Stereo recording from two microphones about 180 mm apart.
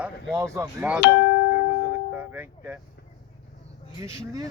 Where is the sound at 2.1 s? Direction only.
10° right (ahead or behind).